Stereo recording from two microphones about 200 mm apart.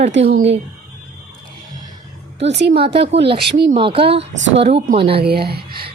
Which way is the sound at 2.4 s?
60° right (ahead or behind).